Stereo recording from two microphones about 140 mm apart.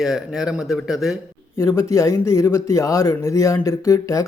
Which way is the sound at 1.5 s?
20° left (ahead or behind).